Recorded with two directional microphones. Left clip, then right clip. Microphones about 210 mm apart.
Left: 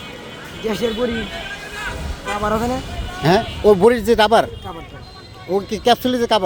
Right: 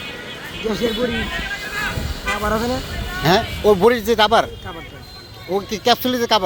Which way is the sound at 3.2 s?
20° left (ahead or behind).